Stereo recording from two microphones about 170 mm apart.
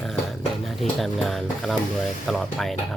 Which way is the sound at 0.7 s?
Centre (ahead or behind).